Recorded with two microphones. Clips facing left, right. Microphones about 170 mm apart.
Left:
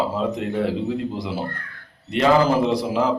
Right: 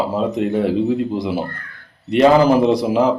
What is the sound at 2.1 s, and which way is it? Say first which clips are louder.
Speech: right 5 dB; 20° right (ahead or behind).